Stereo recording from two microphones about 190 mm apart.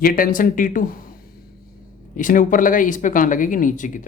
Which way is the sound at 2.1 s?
45° left (ahead or behind).